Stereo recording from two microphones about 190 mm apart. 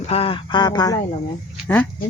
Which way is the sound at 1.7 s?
10° left (ahead or behind).